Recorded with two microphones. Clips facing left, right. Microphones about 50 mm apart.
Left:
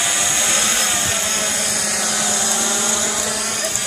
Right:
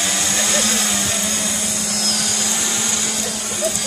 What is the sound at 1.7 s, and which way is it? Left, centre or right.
Helicopter, left.